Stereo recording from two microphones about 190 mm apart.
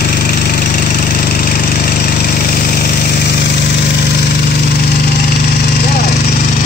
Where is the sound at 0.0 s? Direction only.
55° left (ahead or behind).